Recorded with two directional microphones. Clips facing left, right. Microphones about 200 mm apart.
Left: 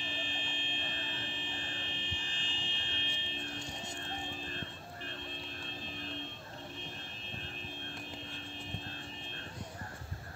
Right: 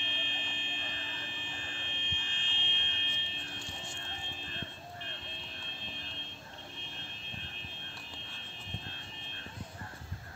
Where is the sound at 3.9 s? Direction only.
40° left (ahead or behind).